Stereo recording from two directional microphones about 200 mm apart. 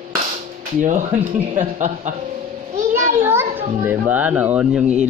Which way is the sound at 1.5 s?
40° right (ahead or behind).